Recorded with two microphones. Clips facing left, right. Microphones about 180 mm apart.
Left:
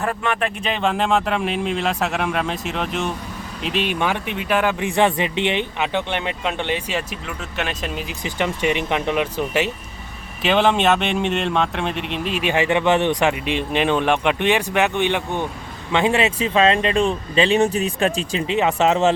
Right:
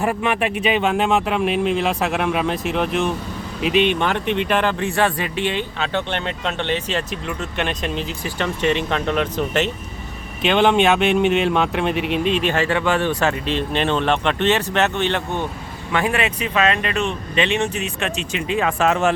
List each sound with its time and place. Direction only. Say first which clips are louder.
0.0 s speech: right 2 dB; 15° right (ahead or behind)
12.3 s speech: left 4 dB; 10° left (ahead or behind)